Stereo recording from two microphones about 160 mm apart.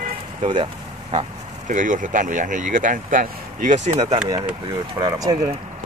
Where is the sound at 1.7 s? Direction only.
55° right (ahead or behind).